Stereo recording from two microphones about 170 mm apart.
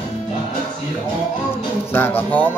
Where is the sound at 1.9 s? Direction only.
10° left (ahead or behind).